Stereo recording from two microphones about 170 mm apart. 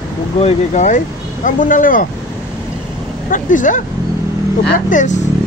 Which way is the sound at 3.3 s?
50° left (ahead or behind).